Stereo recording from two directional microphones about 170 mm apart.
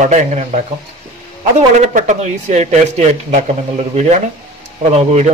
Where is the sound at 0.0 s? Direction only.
45° right (ahead or behind).